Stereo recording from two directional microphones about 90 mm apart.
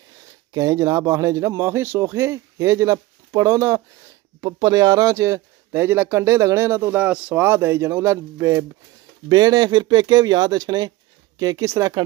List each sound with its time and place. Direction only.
0.5 s a man's voice: 40° right (ahead or behind)
7.0 s speech: 15° right (ahead or behind); by 8.6 s 30° right (ahead or behind)
9.3 s a man's voice: 50° right (ahead or behind); by 11.9 s 35° right (ahead or behind)